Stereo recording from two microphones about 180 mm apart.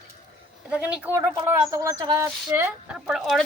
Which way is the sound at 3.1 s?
Centre (ahead or behind).